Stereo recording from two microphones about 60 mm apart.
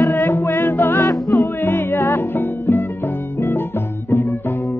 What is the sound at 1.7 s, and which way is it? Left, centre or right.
Music, left.